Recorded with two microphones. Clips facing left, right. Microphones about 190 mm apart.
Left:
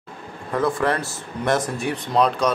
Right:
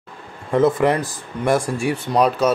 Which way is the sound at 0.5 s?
25° right (ahead or behind).